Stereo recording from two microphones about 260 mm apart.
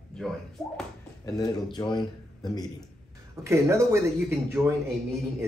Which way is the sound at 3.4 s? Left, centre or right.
Centre.